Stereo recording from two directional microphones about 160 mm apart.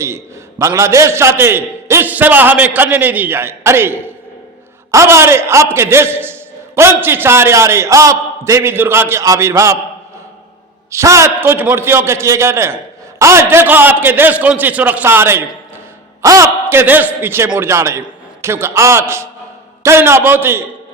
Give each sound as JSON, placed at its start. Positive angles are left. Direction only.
{"t": 0.6, "sound": "a man's voice", "side_deg": -20}
{"t": 10.9, "sound": "a man's voice", "side_deg": -20}